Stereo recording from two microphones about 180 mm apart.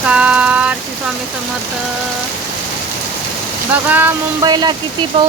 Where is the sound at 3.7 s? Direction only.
10° right (ahead or behind).